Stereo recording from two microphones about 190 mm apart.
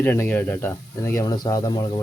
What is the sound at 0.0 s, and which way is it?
Speech, 10° left (ahead or behind).